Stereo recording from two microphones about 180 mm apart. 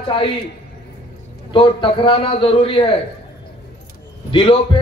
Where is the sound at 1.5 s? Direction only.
30° left (ahead or behind).